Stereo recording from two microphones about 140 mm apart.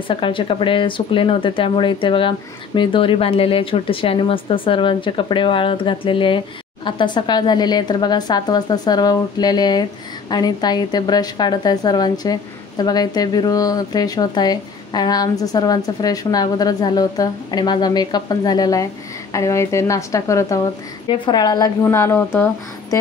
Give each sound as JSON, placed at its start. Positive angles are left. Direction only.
{"t": 0.1, "sound": "a woman's voice", "side_deg": 40}